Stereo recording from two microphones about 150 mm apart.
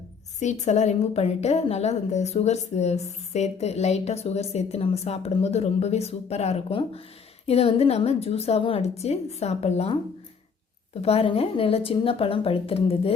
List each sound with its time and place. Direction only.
0.6 s a woman's voice: 50° left (ahead or behind)
11.0 s speech: 40° left (ahead or behind)